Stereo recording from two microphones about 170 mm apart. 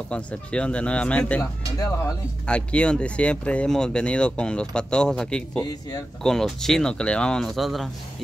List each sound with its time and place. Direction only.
0.1 s speech: 5° left (ahead or behind)
1.4 s speech: 20° left (ahead or behind)
2.4 s speech: 5° left (ahead or behind)